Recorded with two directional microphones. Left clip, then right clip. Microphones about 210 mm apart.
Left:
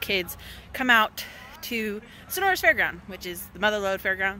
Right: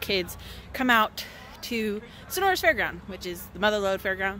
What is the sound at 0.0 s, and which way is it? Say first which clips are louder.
Speech: left 1 dB; centre (ahead or behind).